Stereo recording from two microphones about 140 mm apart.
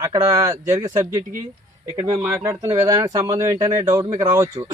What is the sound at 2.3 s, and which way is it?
A man's voice, 20° right (ahead or behind).